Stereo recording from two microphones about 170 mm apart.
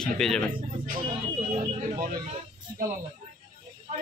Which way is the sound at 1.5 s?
45° right (ahead or behind).